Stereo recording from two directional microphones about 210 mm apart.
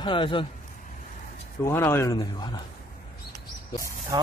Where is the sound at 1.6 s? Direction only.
10° left (ahead or behind).